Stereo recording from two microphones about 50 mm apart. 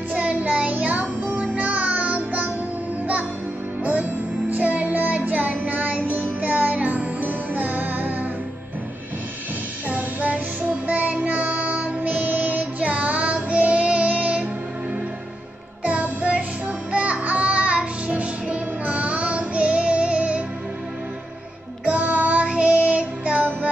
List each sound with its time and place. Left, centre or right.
0.1 s music: right
3.8 s music: right
9.8 s music: right
10.9 s child singing: right
15.8 s music: right
21.8 s music: right